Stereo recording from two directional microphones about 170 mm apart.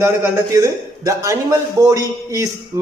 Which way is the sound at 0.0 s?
15° right (ahead or behind).